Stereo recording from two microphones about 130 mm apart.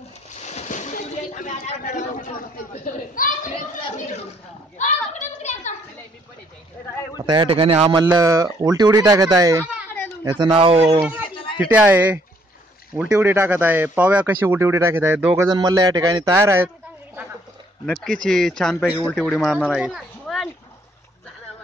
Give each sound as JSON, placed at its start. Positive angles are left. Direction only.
{"t": 0.5, "sound": "a sound", "side_deg": 70}
{"t": 2.8, "sound": "a woman's voice", "side_deg": 90}
{"t": 4.7, "sound": "a sound", "side_deg": 60}
{"t": 7.2, "sound": "speech", "side_deg": -35}
{"t": 7.4, "sound": "speech", "side_deg": -45}
{"t": 8.0, "sound": "speech", "side_deg": -25}
{"t": 10.3, "sound": "speech", "side_deg": -40}
{"t": 11.5, "sound": "speech", "side_deg": -15}
{"t": 15.3, "sound": "a man's voice", "side_deg": -30}
{"t": 17.8, "sound": "speech", "side_deg": 5}